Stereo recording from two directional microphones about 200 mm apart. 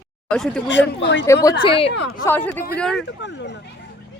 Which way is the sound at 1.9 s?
60° left (ahead or behind).